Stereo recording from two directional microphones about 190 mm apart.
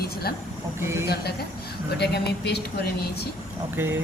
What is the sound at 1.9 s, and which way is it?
Speech, 60° left (ahead or behind).